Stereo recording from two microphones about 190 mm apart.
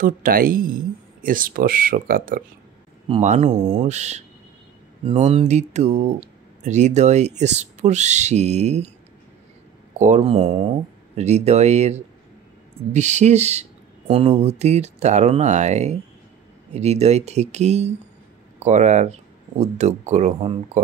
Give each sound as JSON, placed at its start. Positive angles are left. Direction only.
{"t": 0.0, "sound": "speech", "side_deg": -50}
{"t": 3.1, "sound": "speech", "side_deg": -35}
{"t": 9.9, "sound": "speech", "side_deg": -40}